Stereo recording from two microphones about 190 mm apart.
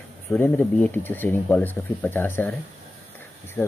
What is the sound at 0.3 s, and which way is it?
Speech, 5° left (ahead or behind).